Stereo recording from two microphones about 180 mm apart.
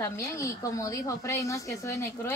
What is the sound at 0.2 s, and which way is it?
A woman's voice, 15° left (ahead or behind).